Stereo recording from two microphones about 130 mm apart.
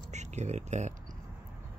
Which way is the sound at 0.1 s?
60° right (ahead or behind).